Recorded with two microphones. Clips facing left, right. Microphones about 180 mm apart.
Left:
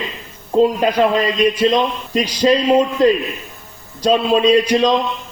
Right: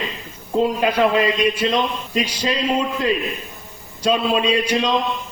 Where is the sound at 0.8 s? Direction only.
35° left (ahead or behind).